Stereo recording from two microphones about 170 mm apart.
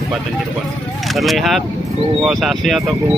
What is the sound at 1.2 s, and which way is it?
Speech, centre (ahead or behind).